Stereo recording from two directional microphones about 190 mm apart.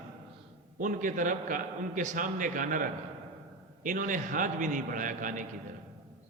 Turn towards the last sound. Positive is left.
turn(degrees=-45)  # may be behind; listen again after turning